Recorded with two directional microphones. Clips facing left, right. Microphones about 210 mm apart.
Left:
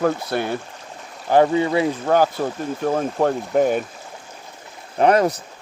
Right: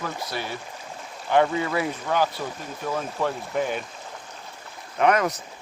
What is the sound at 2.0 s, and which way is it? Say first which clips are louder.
Speech: left 7 dB; 45° left (ahead or behind).